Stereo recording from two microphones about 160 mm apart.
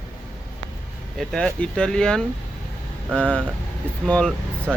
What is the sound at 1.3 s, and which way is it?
Speech, 5° left (ahead or behind).